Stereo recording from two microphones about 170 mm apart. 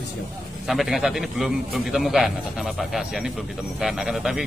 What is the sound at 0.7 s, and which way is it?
A man's voice, centre (ahead or behind).